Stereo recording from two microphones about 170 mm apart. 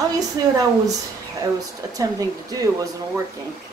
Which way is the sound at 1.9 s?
20° right (ahead or behind).